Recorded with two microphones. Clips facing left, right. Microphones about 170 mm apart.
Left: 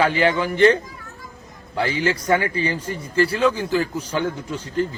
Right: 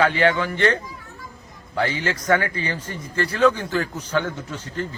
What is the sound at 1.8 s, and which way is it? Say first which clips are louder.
Speech: left 2 dB; 10° left (ahead or behind).